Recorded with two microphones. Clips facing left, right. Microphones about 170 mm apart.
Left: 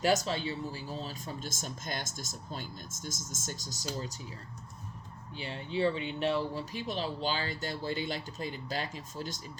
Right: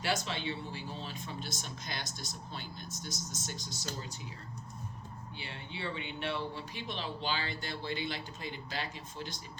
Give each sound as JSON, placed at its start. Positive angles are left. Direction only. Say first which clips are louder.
{"t": 0.0, "sound": "speech", "louder": "left 6 dB", "side_deg": 40}
{"t": 5.4, "sound": "speech", "louder": "left 12 dB", "side_deg": 40}